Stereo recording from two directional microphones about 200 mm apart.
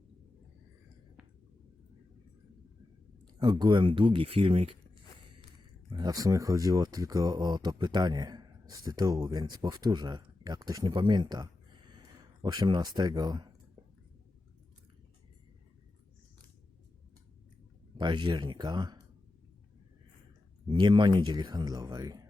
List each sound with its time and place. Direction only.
3.3 s speech: 20° right (ahead or behind)
5.9 s speech: 20° right (ahead or behind)
17.9 s speech: 25° right (ahead or behind)
20.7 s speech: 25° right (ahead or behind)